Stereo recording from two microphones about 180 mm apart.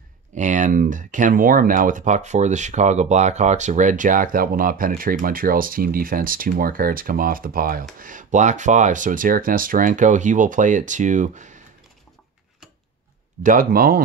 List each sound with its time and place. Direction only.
0.3 s speech: 45° right (ahead or behind)
13.4 s speech: 50° right (ahead or behind)